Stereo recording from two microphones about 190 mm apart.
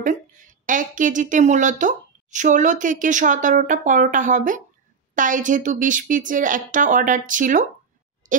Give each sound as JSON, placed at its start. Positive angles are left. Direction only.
{"t": 0.0, "sound": "a woman's voice", "side_deg": -40}